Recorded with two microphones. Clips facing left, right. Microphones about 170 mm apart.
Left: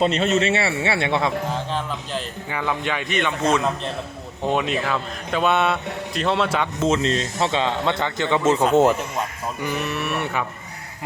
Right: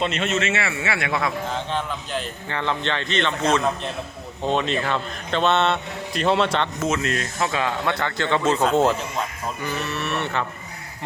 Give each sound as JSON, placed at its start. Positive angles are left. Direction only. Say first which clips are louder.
{"t": 0.0, "sound": "a man's voice", "louder": "left 4 dB", "side_deg": 35}
{"t": 1.7, "sound": "speech", "louder": "even", "side_deg": 5}
{"t": 6.7, "sound": "speech", "louder": "left 3 dB", "side_deg": 30}